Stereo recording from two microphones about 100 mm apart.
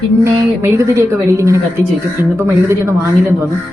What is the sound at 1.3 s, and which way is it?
A woman's voice, 30° right (ahead or behind).